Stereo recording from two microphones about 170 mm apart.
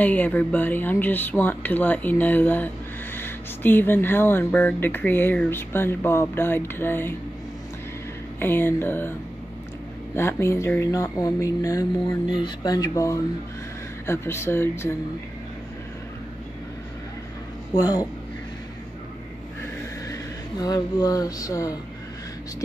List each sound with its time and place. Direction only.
0.0 s speech: 10° left (ahead or behind)
8.4 s speech: 10° left (ahead or behind)
10.1 s speech: 15° left (ahead or behind)
17.7 s speech: 20° left (ahead or behind)
20.1 s speech: 25° left (ahead or behind)